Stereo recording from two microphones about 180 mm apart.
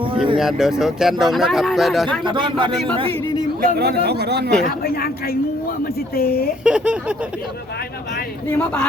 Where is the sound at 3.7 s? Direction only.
65° right (ahead or behind).